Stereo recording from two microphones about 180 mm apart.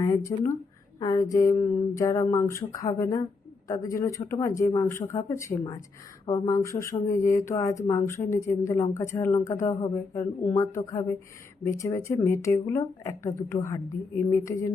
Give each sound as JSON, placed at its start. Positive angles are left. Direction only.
{"t": 0.0, "sound": "speech", "side_deg": 15}
{"t": 11.8, "sound": "speech", "side_deg": 15}